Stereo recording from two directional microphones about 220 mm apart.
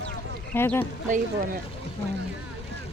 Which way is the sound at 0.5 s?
10° left (ahead or behind).